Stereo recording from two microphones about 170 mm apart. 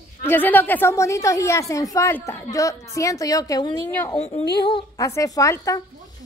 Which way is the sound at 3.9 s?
10° left (ahead or behind).